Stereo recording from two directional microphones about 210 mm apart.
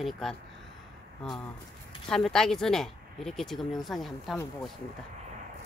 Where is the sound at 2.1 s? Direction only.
Centre (ahead or behind).